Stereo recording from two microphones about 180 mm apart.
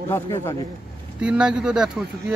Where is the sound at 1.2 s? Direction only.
5° right (ahead or behind).